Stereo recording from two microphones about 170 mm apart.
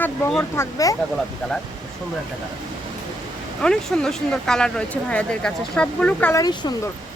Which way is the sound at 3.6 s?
5° left (ahead or behind).